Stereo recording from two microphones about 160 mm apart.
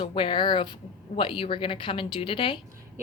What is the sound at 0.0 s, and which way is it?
A woman's voice, 35° left (ahead or behind).